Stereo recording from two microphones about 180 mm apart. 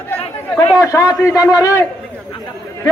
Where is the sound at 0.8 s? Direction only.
20° left (ahead or behind).